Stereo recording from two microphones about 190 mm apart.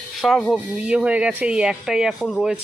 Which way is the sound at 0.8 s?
5° right (ahead or behind).